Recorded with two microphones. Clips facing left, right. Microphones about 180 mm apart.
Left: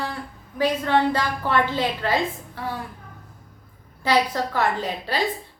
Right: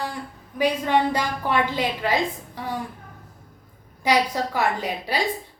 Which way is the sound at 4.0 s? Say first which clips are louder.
Even; 10° right (ahead or behind).